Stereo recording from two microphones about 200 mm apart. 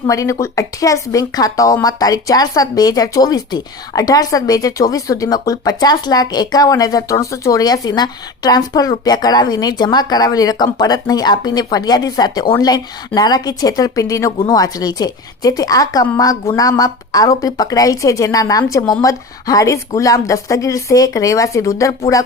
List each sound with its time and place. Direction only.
0.1 s a woman's voice: 15° left (ahead or behind)